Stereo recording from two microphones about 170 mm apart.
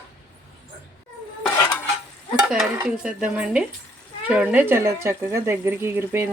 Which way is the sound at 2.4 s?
5° right (ahead or behind).